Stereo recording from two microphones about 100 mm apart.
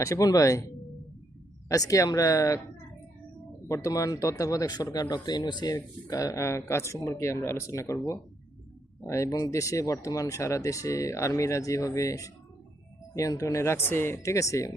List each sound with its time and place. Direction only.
0.0 s speech: 35° left (ahead or behind)
3.7 s speech: 30° left (ahead or behind)